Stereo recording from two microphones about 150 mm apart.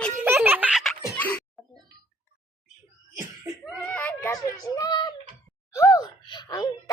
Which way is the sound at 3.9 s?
10° left (ahead or behind).